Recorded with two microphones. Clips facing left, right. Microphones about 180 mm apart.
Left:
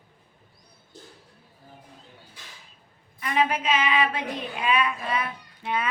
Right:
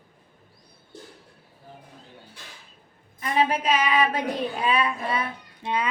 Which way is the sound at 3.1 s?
35° right (ahead or behind).